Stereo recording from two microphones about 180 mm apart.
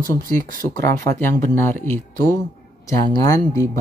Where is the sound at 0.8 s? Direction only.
15° left (ahead or behind).